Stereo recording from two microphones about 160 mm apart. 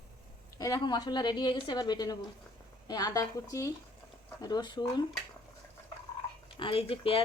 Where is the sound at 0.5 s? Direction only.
25° left (ahead or behind).